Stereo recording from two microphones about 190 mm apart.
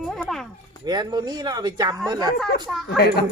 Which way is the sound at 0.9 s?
20° right (ahead or behind).